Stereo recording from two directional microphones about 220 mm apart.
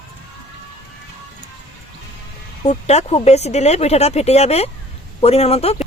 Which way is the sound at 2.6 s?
30° left (ahead or behind).